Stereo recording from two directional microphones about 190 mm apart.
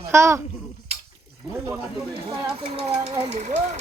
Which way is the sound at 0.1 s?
15° right (ahead or behind).